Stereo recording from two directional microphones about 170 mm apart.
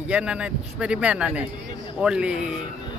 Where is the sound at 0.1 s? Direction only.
5° right (ahead or behind).